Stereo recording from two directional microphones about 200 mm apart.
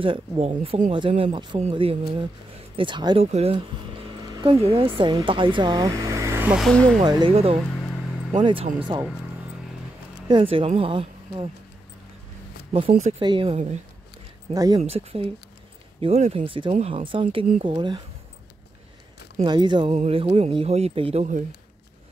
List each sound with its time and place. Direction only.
0.0 s speech: 25° right (ahead or behind)
0.5 s speech: 35° right (ahead or behind)
0.9 s speech: 25° right (ahead or behind); by 7.0 s 5° left (ahead or behind)
7.0 s speech: 20° right (ahead or behind)
10.2 s speech: 25° right (ahead or behind)
13.2 s speech: 25° right (ahead or behind)
14.5 s speech: 15° right (ahead or behind)
14.8 s speech: 30° right (ahead or behind)
19.4 s speech: 20° right (ahead or behind)